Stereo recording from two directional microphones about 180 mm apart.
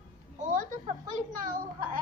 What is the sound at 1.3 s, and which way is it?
Speech, 50° right (ahead or behind).